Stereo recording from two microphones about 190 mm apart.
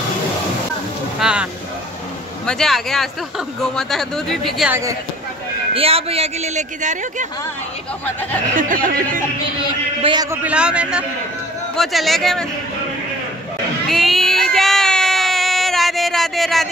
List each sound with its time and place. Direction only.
1.2 s speech: 5° right (ahead or behind)
4.6 s speech: 15° right (ahead or behind)
5.8 s a man's voice: 30° right (ahead or behind)
8.5 s speech: 45° right (ahead or behind)
10.3 s speech: 5° right (ahead or behind)
13.8 s child singing: centre (ahead or behind)